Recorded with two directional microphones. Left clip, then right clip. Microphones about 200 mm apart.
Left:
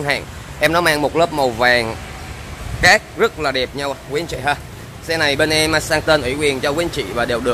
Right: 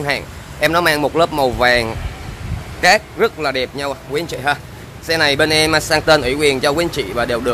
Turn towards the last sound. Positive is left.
turn(degrees=-10)  # may be behind; listen again after turning